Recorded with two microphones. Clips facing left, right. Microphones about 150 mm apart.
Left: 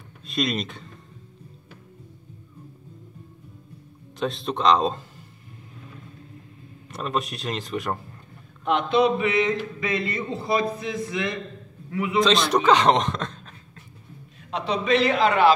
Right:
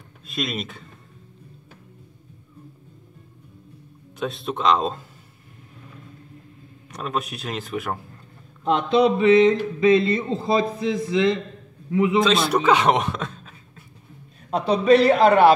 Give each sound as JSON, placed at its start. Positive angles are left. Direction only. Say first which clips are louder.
{"t": 0.3, "sound": "speech", "louder": "left 2 dB", "side_deg": 0}
{"t": 4.2, "sound": "speech", "louder": "left 1 dB", "side_deg": 0}
{"t": 6.9, "sound": "speech", "louder": "even", "side_deg": 0}
{"t": 8.6, "sound": "speech", "louder": "right 2 dB", "side_deg": -30}
{"t": 12.2, "sound": "speech", "louder": "left 4 dB", "side_deg": -5}
{"t": 14.5, "sound": "a man's voice", "louder": "right 6 dB", "side_deg": -40}